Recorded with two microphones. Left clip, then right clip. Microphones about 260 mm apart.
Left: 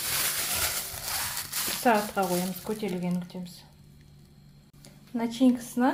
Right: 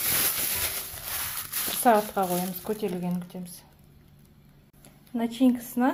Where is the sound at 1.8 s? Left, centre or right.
Right.